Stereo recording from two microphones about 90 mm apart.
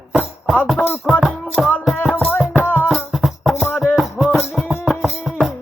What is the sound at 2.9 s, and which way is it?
Music, centre (ahead or behind).